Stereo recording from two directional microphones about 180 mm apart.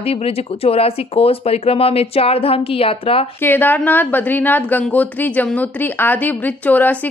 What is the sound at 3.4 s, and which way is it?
A woman's voice, 10° left (ahead or behind).